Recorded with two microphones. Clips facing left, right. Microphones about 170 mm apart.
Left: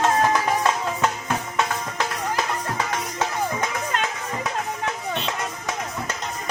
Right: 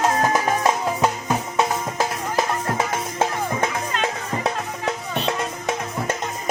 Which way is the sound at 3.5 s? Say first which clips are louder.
Right 2 dB; 30° right (ahead or behind).